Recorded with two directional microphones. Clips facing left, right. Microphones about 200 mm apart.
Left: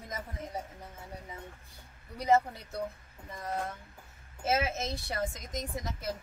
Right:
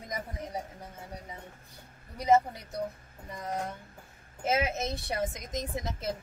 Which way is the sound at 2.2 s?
20° right (ahead or behind).